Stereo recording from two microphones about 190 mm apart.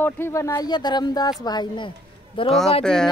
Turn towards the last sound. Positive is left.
turn(degrees=5)  # may be behind; listen again after turning